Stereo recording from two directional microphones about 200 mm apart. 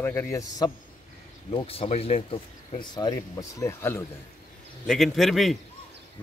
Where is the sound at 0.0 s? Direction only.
10° left (ahead or behind).